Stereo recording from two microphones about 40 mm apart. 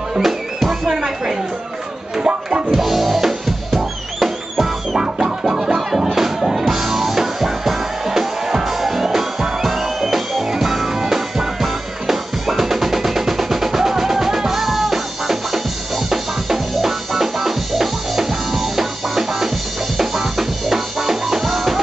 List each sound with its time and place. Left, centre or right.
0.1 s music: centre
2.1 s a sound: right
2.7 s music: centre